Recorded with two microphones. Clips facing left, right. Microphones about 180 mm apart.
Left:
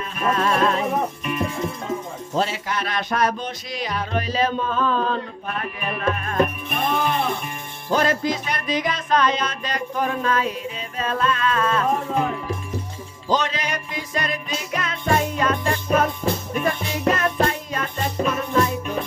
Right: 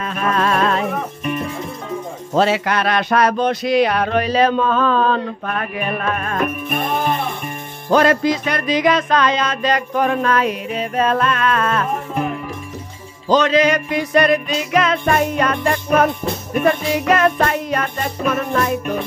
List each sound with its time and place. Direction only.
0.0 s music: 90° right; by 0.8 s 70° right (ahead or behind)
2.3 s music: 80° right
7.9 s music: 70° right (ahead or behind)
13.3 s music: 90° right; by 18.9 s 65° right (ahead or behind)